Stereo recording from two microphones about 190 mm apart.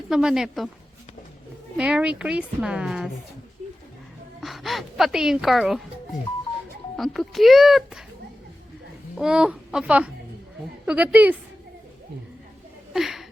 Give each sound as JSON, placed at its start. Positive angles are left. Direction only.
{"t": 0.1, "sound": "a woman's voice", "side_deg": -5}
{"t": 1.7, "sound": "a woman's voice", "side_deg": -5}
{"t": 4.4, "sound": "speech", "side_deg": 0}
{"t": 6.9, "sound": "a woman's voice", "side_deg": 0}
{"t": 9.1, "sound": "a woman's voice", "side_deg": -5}
{"t": 12.9, "sound": "chuckle", "side_deg": 0}